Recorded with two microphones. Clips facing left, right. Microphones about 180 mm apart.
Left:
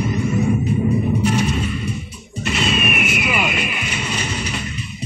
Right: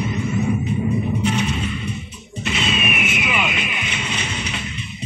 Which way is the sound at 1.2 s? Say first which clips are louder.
Left 2 dB; 45° left (ahead or behind).